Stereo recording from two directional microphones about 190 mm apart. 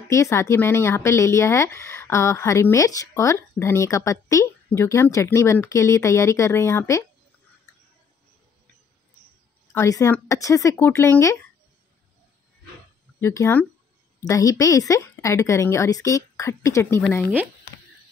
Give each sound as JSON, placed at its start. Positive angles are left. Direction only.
{"t": 0.1, "sound": "speech", "side_deg": 15}
{"t": 9.7, "sound": "speech", "side_deg": 15}
{"t": 13.2, "sound": "speech", "side_deg": 15}